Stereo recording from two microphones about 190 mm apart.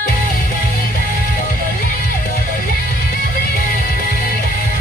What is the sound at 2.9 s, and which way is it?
Music, 50° left (ahead or behind).